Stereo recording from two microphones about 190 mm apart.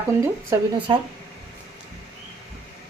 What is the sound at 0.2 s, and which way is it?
Speech, 20° right (ahead or behind).